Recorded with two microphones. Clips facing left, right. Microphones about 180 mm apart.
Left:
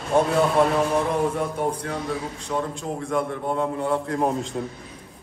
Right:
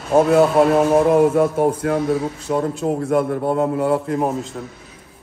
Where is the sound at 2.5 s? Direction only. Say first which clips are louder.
Right 6 dB; 50° right (ahead or behind).